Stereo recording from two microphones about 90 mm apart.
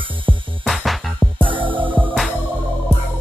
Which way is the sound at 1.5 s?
70° right (ahead or behind).